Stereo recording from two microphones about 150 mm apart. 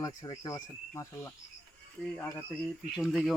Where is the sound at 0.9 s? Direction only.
20° left (ahead or behind).